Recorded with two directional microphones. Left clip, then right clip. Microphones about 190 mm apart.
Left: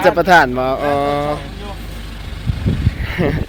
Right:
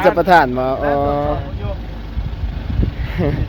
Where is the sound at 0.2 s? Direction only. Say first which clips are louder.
Left 1 dB; 5° right (ahead or behind).